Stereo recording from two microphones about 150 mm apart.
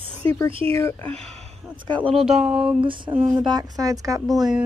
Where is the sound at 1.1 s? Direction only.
45° right (ahead or behind).